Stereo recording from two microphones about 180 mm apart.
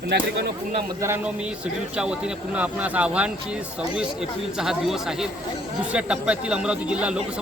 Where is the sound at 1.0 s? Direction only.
15° right (ahead or behind).